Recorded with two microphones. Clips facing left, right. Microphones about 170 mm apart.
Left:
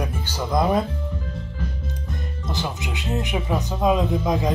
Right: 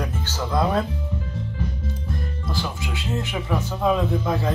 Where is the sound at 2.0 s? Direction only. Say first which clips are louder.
Even; 20° left (ahead or behind).